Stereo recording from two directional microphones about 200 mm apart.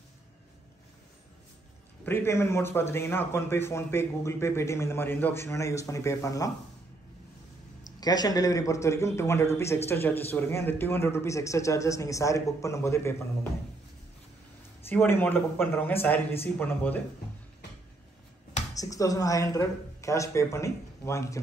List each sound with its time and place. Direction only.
2.0 s a man's voice: 10° left (ahead or behind)
8.0 s a man's voice: 20° left (ahead or behind)
14.9 s a man's voice: 10° left (ahead or behind)
18.8 s a man's voice: 15° left (ahead or behind)